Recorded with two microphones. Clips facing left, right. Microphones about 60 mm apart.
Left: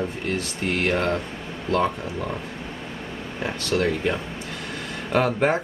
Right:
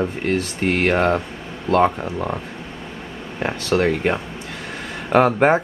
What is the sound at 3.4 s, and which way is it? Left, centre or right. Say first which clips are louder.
Speech: right 5 dB; right.